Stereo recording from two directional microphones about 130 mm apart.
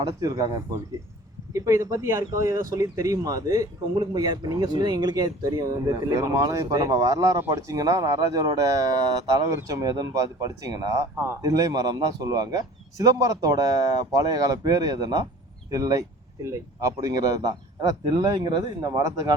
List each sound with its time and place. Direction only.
0.1 s speech: 25° right (ahead or behind)
1.5 s speech: 25° right (ahead or behind)